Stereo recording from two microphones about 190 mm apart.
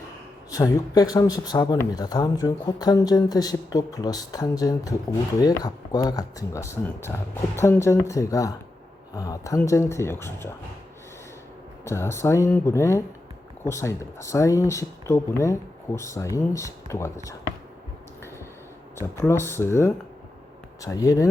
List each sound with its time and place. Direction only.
0.5 s speech: 20° left (ahead or behind)
11.9 s speech: 15° left (ahead or behind)
18.9 s speech: 15° left (ahead or behind)